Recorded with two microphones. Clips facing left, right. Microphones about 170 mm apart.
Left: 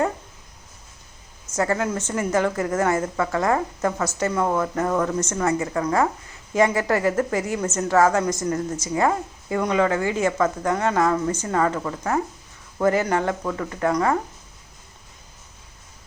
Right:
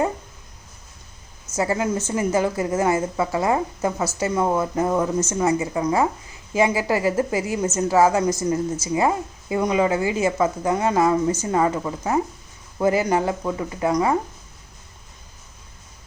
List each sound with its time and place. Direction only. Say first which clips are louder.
1.5 s a woman's voice: right 1 dB; 15° right (ahead or behind)